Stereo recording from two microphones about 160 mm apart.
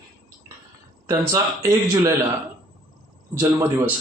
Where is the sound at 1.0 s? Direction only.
20° right (ahead or behind).